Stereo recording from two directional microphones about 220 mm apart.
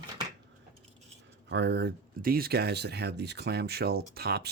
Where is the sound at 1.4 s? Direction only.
50° right (ahead or behind).